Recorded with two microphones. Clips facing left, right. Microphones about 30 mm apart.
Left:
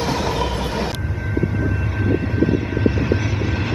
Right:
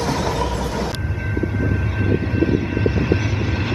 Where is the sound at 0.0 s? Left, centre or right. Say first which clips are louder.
Even; centre.